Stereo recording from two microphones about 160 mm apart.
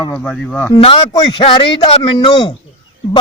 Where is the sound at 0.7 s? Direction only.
30° left (ahead or behind).